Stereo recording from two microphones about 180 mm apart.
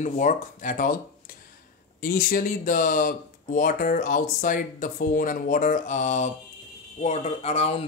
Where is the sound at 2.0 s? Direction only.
50° left (ahead or behind).